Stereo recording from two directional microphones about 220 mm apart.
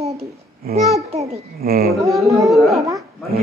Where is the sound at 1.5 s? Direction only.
45° right (ahead or behind).